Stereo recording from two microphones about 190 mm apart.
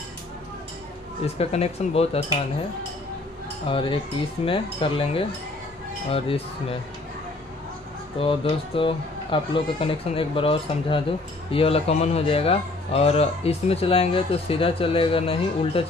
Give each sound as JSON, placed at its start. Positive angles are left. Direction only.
{"t": 1.2, "sound": "speech", "side_deg": 35}
{"t": 3.6, "sound": "speech", "side_deg": 30}
{"t": 8.2, "sound": "speech", "side_deg": 30}